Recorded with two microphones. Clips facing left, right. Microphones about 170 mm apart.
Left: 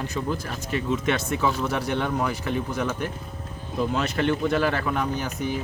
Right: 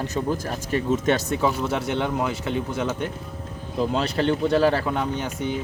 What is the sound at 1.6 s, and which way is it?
Speech, 25° right (ahead or behind).